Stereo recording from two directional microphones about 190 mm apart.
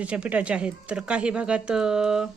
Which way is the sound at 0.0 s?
5° right (ahead or behind).